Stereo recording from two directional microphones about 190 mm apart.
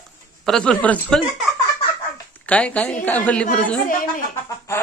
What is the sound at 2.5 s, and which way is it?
Speech, 5° left (ahead or behind).